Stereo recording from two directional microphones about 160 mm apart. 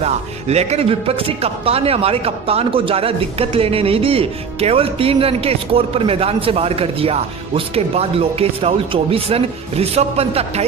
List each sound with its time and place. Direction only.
0.0 s speech: 40° right (ahead or behind)